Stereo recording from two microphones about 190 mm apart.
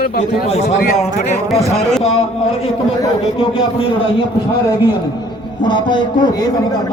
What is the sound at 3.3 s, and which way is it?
Speech, 30° left (ahead or behind).